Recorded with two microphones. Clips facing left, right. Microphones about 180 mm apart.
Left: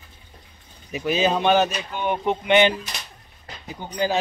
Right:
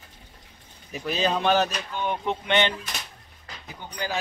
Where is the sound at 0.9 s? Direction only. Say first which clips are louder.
Left 4 dB; 5° left (ahead or behind).